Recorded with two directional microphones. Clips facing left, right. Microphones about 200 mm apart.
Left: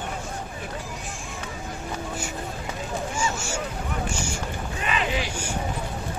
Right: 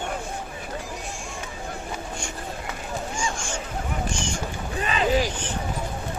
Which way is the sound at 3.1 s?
5° left (ahead or behind).